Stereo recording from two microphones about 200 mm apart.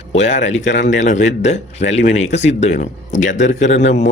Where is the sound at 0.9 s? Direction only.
35° left (ahead or behind).